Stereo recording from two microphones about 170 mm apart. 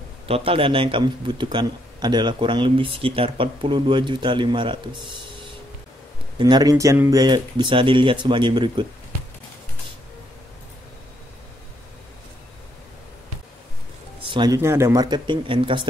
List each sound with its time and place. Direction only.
0.3 s a man's voice: 35° right (ahead or behind)
6.3 s a man's voice: 25° right (ahead or behind)
14.3 s a man's voice: 20° right (ahead or behind)